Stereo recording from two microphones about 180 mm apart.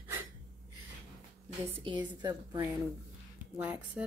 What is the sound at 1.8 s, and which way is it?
Speech, 25° right (ahead or behind).